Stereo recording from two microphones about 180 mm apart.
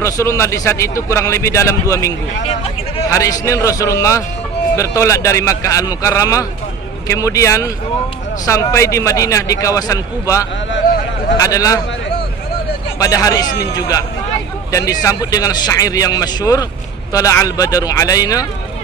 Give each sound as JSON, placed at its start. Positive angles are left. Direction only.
{"t": 0.0, "sound": "a man's voice", "side_deg": 15}
{"t": 13.0, "sound": "speech", "side_deg": 20}